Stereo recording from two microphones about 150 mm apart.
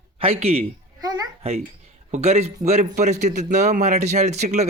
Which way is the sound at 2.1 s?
45° right (ahead or behind).